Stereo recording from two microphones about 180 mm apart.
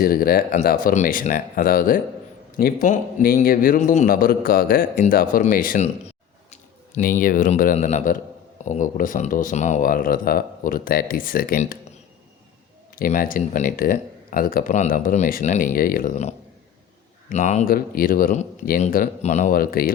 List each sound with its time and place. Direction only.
0.0 s a man's voice: 55° left (ahead or behind)
13.0 s a man's voice: 50° left (ahead or behind)
17.7 s a man's voice: 55° left (ahead or behind)